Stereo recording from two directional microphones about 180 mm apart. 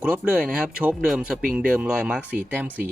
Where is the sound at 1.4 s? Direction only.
50° right (ahead or behind).